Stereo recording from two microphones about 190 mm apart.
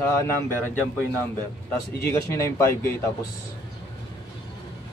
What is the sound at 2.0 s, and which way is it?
Speech, 15° left (ahead or behind).